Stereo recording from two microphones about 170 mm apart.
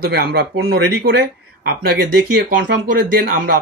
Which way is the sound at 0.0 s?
65° right (ahead or behind).